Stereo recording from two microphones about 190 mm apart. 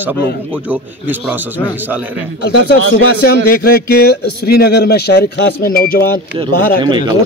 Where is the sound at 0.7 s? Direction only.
10° right (ahead or behind).